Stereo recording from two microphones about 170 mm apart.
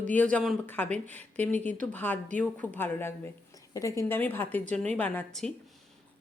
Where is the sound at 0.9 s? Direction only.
45° right (ahead or behind).